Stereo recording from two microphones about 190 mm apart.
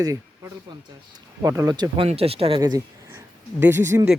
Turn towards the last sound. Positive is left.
turn(degrees=-15)  # may be behind; listen again after turning